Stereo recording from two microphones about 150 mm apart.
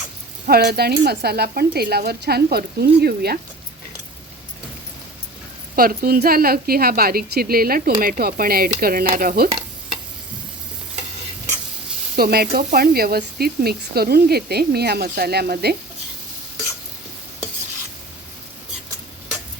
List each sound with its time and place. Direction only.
0.4 s speech: 90° right
5.7 s a woman's voice: 75° right (ahead or behind)
9.0 s stir: 70° right (ahead or behind)
12.1 s speech: 90° right